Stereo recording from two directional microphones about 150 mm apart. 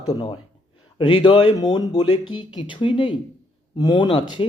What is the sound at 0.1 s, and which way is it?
Speech, 30° left (ahead or behind).